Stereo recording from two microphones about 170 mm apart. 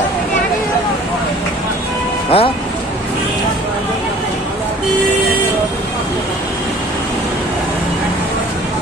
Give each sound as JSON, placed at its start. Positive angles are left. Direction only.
{"t": 2.3, "sound": "speech", "side_deg": 35}